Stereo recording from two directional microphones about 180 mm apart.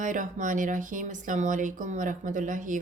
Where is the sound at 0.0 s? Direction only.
45° right (ahead or behind).